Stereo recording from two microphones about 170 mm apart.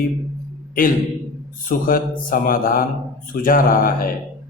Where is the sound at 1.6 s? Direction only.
55° left (ahead or behind).